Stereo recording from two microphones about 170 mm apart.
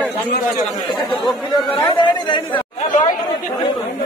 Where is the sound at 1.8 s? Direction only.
30° left (ahead or behind).